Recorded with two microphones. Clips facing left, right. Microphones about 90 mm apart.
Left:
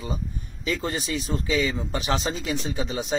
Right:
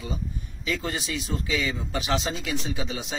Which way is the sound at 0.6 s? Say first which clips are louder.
Left 2 dB; 35° left (ahead or behind).